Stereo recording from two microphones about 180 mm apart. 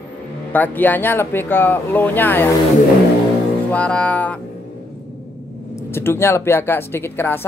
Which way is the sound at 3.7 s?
5° left (ahead or behind).